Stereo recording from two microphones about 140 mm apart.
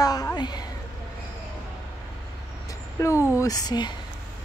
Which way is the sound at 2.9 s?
20° left (ahead or behind).